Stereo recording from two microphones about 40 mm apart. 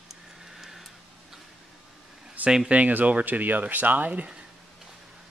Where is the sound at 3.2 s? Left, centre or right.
Right.